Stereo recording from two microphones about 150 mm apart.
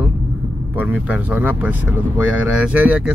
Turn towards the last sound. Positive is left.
turn(degrees=-10)  # may be behind; listen again after turning